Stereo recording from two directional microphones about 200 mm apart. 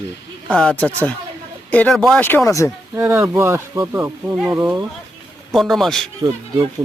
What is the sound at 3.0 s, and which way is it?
A man's voice, 10° right (ahead or behind).